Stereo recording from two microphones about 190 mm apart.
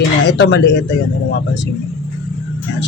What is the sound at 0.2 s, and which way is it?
Speech, 70° left (ahead or behind).